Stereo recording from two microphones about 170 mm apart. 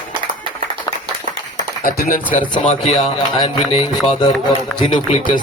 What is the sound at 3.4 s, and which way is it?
Music, 25° left (ahead or behind).